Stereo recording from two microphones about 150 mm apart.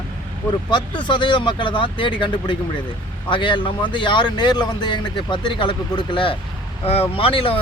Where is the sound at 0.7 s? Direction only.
30° left (ahead or behind).